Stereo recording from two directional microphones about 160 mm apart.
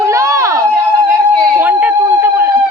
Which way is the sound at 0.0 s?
20° right (ahead or behind).